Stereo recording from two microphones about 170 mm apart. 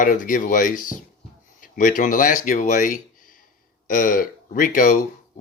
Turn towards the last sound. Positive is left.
turn(degrees=50)  # may be behind; listen again after turning